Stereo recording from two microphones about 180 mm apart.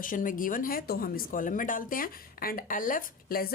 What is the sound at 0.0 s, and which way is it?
Speech, 50° left (ahead or behind).